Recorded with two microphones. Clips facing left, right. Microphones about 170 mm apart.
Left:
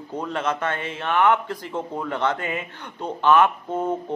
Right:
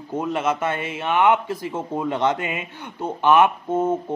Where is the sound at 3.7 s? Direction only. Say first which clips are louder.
Right 4 dB; 25° right (ahead or behind).